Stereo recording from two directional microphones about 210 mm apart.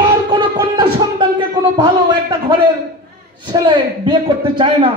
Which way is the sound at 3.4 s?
20° right (ahead or behind).